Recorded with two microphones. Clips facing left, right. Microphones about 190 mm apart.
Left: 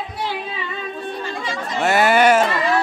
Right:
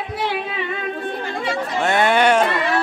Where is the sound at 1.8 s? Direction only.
5° left (ahead or behind).